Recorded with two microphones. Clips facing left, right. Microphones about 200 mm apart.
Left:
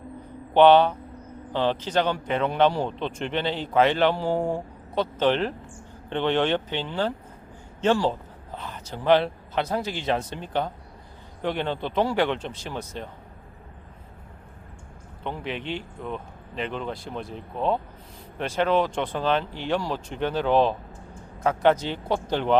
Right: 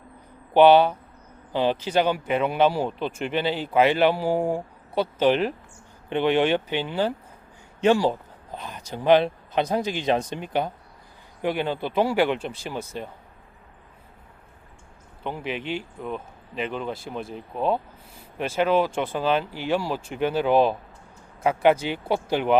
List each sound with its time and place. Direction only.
0.5 s a man's voice: 10° right (ahead or behind)
15.2 s a man's voice: 5° right (ahead or behind)